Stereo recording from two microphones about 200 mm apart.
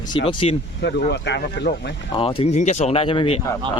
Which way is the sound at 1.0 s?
60° left (ahead or behind).